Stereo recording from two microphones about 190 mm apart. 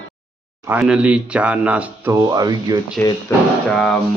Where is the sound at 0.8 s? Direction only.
5° right (ahead or behind).